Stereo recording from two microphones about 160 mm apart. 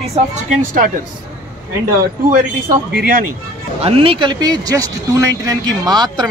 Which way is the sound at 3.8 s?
35° right (ahead or behind).